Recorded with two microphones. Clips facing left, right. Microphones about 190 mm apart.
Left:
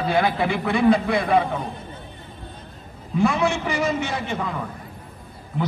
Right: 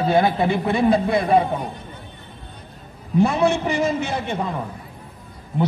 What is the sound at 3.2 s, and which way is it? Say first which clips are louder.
Speech: right 3 dB; 25° right (ahead or behind).